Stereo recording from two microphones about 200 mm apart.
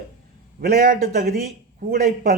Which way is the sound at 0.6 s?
45° right (ahead or behind).